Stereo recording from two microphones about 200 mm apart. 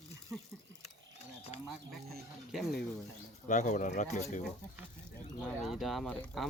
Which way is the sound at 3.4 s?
40° left (ahead or behind).